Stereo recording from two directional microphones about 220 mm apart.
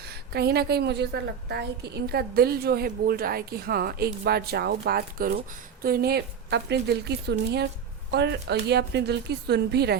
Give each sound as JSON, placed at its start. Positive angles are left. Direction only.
{"t": 0.0, "sound": "a woman's voice", "side_deg": -45}